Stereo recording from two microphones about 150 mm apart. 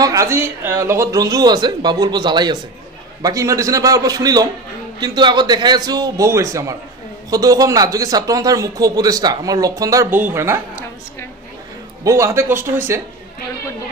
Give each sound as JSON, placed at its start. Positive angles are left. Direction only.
{"t": 0.0, "sound": "speech", "side_deg": -20}
{"t": 12.0, "sound": "speech", "side_deg": -20}